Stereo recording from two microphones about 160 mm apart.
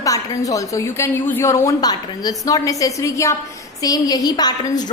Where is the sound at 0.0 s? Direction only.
20° left (ahead or behind).